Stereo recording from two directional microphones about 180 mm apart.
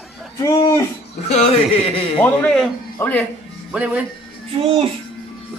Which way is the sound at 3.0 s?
10° left (ahead or behind).